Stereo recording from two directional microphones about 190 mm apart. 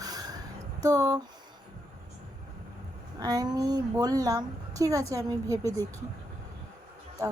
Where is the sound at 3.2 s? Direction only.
20° right (ahead or behind).